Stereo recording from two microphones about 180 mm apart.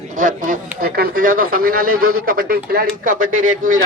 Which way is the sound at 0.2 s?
45° right (ahead or behind).